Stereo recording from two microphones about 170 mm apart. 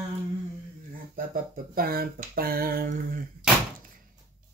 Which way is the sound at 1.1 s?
55° right (ahead or behind).